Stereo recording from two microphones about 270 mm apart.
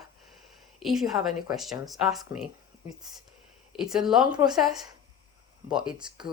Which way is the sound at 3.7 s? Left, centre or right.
Centre.